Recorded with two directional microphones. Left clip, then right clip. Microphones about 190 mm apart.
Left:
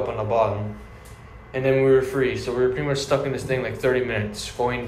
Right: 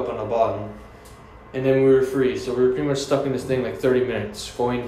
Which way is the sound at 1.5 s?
15° right (ahead or behind).